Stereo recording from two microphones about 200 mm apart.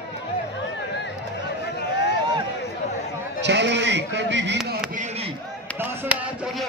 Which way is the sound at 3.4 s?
60° right (ahead or behind).